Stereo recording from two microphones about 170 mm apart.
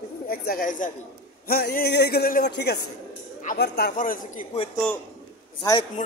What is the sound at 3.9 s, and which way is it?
Speech, 50° left (ahead or behind).